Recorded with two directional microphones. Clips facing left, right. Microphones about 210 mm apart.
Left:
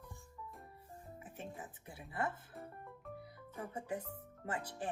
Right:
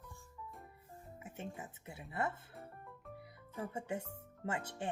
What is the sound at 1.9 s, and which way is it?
Speech, 25° right (ahead or behind).